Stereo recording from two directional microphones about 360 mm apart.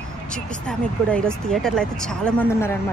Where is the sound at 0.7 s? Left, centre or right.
Centre.